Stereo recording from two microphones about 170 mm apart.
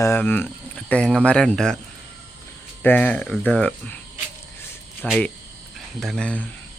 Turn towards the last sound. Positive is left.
turn(degrees=5)  # may be behind; listen again after turning